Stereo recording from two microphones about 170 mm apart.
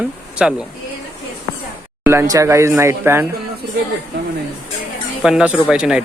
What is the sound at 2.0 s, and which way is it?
Speech, 15° right (ahead or behind).